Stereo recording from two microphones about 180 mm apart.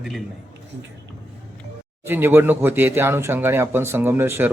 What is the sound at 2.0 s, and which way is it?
Speech, 10° right (ahead or behind).